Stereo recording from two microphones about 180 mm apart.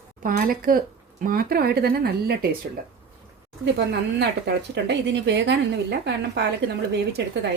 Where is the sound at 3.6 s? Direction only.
70° right (ahead or behind).